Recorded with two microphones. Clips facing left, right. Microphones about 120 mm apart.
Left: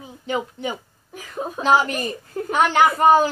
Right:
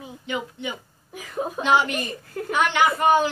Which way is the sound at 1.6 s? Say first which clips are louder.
Left 3 dB; 35° left (ahead or behind).